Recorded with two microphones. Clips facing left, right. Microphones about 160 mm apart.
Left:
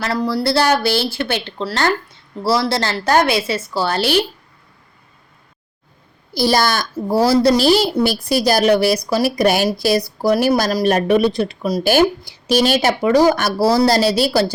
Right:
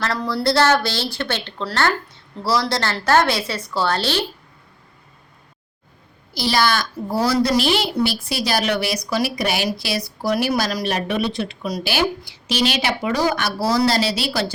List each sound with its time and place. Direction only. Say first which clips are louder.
0.0 s speech: left 3 dB; 5° left (ahead or behind)
6.4 s a woman's voice: left 3 dB; 45° left (ahead or behind)